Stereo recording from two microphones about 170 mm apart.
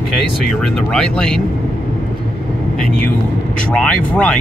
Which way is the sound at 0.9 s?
5° left (ahead or behind).